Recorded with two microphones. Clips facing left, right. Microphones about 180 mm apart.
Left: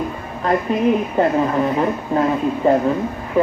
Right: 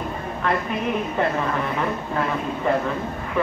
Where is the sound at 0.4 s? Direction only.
35° left (ahead or behind).